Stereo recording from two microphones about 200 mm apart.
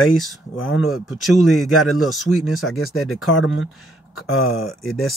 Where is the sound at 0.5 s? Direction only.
75° left (ahead or behind).